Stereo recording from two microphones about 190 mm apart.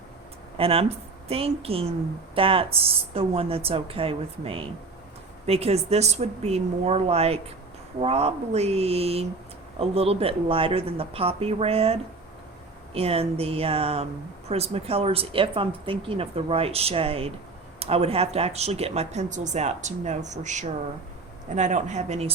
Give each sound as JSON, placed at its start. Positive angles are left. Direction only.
{"t": 0.5, "sound": "a woman's voice", "side_deg": -30}